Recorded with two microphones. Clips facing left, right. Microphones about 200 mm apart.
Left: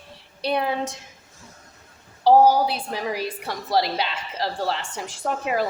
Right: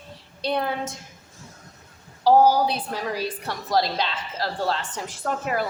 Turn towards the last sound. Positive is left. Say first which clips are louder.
# left 1 dB
turn(degrees=15)  # may be behind; listen again after turning